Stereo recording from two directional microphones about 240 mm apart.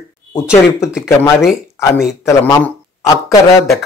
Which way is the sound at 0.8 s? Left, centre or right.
Centre.